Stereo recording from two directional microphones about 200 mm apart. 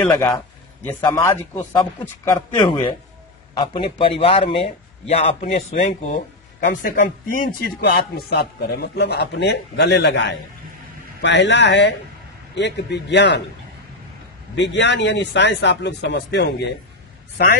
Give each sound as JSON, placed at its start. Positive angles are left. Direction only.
{"t": 0.1, "sound": "a man's voice", "side_deg": 20}
{"t": 14.5, "sound": "speech", "side_deg": 65}